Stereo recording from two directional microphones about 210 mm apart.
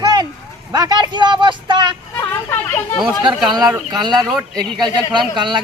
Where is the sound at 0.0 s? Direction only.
20° right (ahead or behind).